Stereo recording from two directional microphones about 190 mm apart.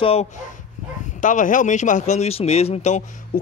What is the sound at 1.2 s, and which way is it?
Speech, 45° left (ahead or behind).